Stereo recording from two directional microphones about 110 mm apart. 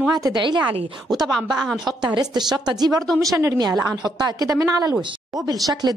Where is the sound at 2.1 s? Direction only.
40° right (ahead or behind).